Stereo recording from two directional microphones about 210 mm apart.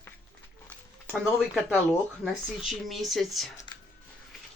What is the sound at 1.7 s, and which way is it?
Speech, 5° left (ahead or behind).